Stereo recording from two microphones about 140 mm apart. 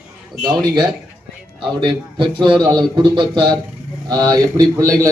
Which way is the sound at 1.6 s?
35° right (ahead or behind).